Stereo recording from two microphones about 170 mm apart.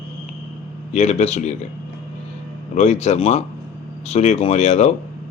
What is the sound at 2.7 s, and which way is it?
Speech, 40° left (ahead or behind).